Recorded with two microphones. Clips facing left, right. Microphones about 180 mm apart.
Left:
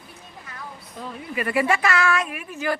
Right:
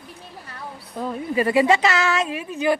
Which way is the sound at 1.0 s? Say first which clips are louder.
Right 8 dB; 45° right (ahead or behind).